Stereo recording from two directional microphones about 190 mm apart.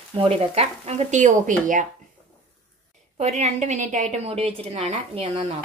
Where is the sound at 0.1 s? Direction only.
30° right (ahead or behind).